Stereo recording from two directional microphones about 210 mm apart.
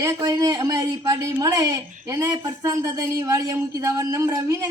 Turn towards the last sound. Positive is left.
turn(degrees=-15)  # may be behind; listen again after turning